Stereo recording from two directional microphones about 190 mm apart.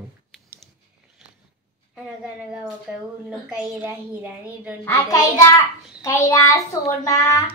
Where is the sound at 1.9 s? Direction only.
Centre (ahead or behind).